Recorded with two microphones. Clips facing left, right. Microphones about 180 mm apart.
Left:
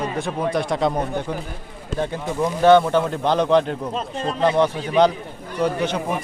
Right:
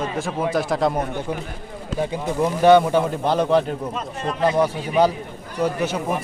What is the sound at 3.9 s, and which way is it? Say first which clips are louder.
Speech: left 2 dB; 30° left (ahead or behind).